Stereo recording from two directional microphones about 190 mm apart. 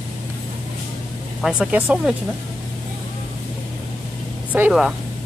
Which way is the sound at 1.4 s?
5° right (ahead or behind).